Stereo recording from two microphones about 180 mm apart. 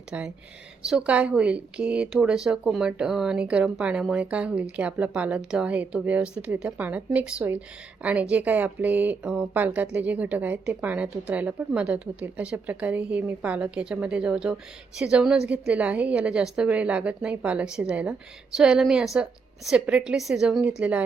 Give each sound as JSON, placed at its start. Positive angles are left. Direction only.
{"t": 0.1, "sound": "a woman's voice", "side_deg": -10}